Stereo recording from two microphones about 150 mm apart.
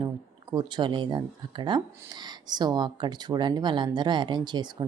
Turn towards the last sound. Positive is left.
turn(degrees=-30)  # may be behind; listen again after turning